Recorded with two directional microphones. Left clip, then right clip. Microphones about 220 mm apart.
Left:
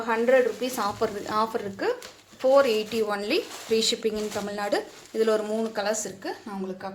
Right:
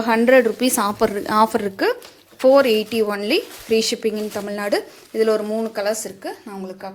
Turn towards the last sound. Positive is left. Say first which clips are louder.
# right 2 dB
turn(degrees=-25)  # may be behind; listen again after turning